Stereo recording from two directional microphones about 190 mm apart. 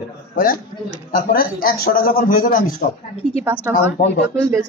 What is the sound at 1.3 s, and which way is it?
Speech, 50° left (ahead or behind).